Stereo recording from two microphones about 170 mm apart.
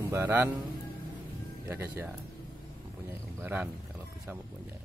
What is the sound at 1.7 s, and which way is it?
Speech, 10° right (ahead or behind).